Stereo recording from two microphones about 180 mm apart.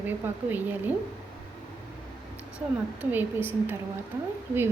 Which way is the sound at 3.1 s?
10° right (ahead or behind).